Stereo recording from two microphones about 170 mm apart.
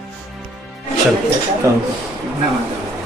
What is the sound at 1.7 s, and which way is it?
Speech, 20° right (ahead or behind).